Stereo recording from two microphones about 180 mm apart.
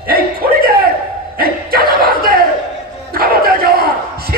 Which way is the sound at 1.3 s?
55° right (ahead or behind).